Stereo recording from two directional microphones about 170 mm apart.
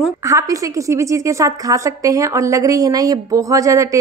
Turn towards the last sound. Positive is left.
turn(degrees=-20)  # may be behind; listen again after turning